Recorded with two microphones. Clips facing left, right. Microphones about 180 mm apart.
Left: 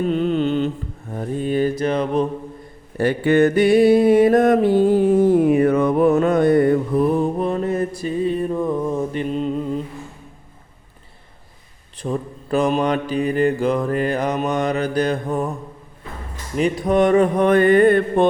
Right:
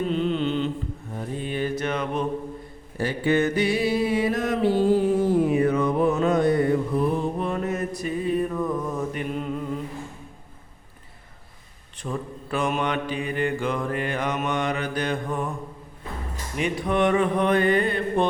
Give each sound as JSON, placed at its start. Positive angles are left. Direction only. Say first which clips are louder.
{"t": 0.1, "sound": "mantra", "louder": "left 5 dB", "side_deg": 50}
{"t": 3.0, "sound": "music", "louder": "left 7 dB", "side_deg": 55}
{"t": 7.3, "sound": "mantra", "louder": "left 6 dB", "side_deg": 35}
{"t": 11.9, "sound": "mantra", "louder": "left 6 dB", "side_deg": 35}
{"t": 16.6, "sound": "music", "louder": "left 6 dB", "side_deg": 40}